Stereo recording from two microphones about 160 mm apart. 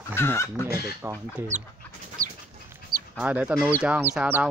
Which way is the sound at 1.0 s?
15° right (ahead or behind).